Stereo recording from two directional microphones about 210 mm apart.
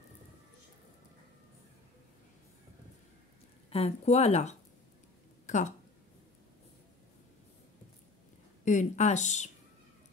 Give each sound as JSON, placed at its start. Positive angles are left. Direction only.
{"t": 3.7, "sound": "speech", "side_deg": 30}
{"t": 5.5, "sound": "a sound", "side_deg": 35}
{"t": 8.6, "sound": "speech", "side_deg": 35}